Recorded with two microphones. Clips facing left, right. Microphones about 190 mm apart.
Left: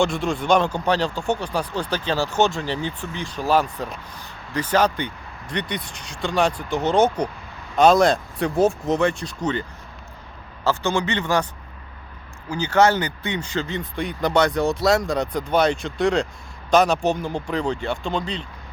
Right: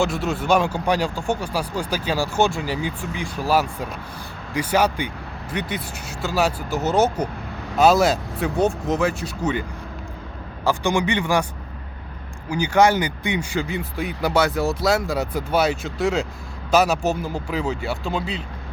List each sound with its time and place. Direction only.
0.0 s speech: 5° right (ahead or behind)
12.5 s speech: 10° right (ahead or behind)